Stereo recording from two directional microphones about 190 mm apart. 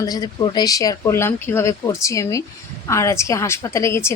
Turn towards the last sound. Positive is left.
turn(degrees=15)  # may be behind; listen again after turning